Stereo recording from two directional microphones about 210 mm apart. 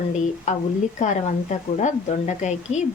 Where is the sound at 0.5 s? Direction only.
35° left (ahead or behind).